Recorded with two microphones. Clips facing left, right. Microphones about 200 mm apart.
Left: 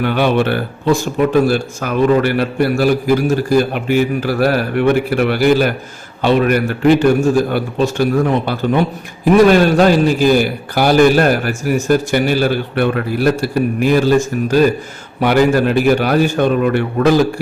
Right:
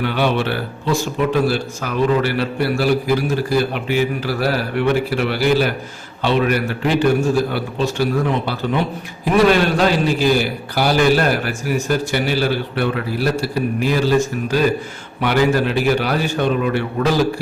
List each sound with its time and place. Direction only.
0.0 s a man's voice: 50° left (ahead or behind)